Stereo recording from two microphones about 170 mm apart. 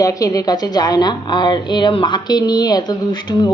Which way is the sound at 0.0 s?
20° left (ahead or behind).